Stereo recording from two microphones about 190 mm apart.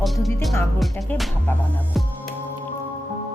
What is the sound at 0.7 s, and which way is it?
Music, 5° left (ahead or behind).